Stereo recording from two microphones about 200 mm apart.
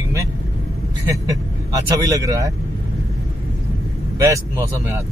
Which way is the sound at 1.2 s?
15° right (ahead or behind).